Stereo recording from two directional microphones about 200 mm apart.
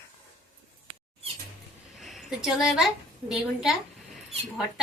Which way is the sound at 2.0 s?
Centre (ahead or behind).